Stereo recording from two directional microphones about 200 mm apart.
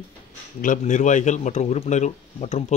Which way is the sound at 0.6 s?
40° left (ahead or behind).